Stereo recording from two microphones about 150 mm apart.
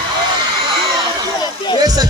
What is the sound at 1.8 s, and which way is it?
Speech, 25° right (ahead or behind).